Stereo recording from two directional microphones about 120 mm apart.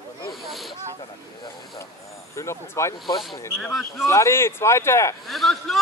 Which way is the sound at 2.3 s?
20° left (ahead or behind).